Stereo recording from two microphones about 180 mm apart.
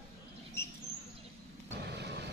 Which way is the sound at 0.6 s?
15° left (ahead or behind).